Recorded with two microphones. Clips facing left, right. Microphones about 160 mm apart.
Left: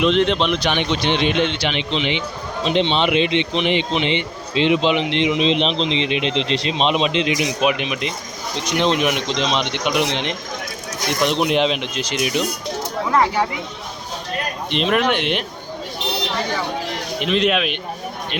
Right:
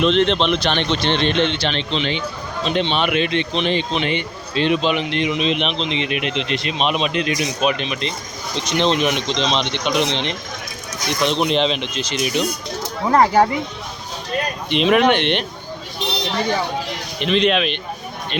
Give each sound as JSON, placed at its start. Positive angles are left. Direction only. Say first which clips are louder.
{"t": 0.0, "sound": "a man's voice", "louder": "right 1 dB", "side_deg": 10}
{"t": 13.1, "sound": "speech", "louder": "right 5 dB", "side_deg": -40}
{"t": 14.7, "sound": "speech", "louder": "right 4 dB", "side_deg": 0}
{"t": 17.2, "sound": "speech", "louder": "right 1 dB", "side_deg": 5}